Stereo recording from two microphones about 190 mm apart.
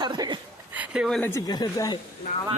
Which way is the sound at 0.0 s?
25° right (ahead or behind).